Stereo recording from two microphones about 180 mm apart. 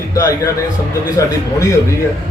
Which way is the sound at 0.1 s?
20° left (ahead or behind).